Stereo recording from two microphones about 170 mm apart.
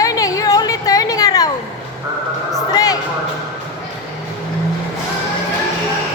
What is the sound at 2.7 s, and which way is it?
Speech, 20° left (ahead or behind).